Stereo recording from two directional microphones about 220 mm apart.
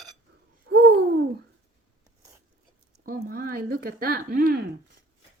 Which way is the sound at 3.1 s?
40° right (ahead or behind).